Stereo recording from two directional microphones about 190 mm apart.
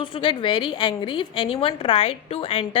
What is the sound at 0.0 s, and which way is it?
A woman's voice, 25° left (ahead or behind).